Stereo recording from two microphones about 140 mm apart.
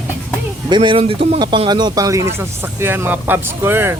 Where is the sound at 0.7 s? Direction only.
35° right (ahead or behind); by 3.9 s 15° right (ahead or behind).